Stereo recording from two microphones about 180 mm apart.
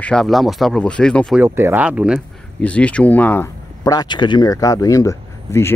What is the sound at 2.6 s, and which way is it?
Speech, 5° left (ahead or behind).